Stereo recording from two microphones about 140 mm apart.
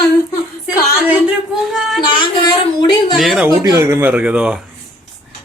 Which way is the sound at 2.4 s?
30° left (ahead or behind).